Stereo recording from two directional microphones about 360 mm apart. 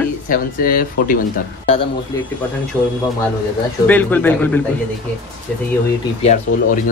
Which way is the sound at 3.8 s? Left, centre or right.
Centre.